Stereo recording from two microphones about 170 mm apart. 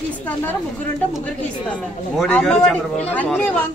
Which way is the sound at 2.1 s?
5° left (ahead or behind).